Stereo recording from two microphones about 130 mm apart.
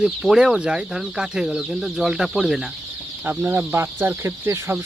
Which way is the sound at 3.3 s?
15° right (ahead or behind).